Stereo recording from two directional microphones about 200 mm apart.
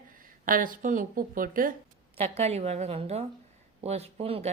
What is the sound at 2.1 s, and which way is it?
Speech, 30° right (ahead or behind).